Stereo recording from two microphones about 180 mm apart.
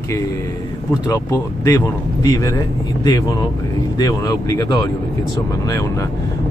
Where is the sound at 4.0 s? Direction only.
20° left (ahead or behind).